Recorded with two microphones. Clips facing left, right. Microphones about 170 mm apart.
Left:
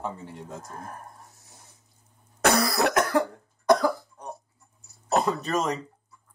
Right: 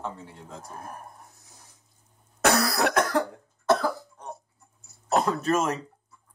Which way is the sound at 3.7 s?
15° left (ahead or behind).